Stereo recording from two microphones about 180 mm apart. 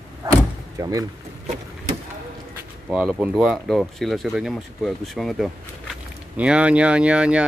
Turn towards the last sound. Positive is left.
turn(degrees=-5)  # may be behind; listen again after turning